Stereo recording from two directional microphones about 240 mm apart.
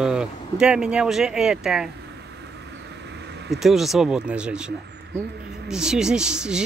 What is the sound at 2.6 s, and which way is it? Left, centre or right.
Vehicle, right.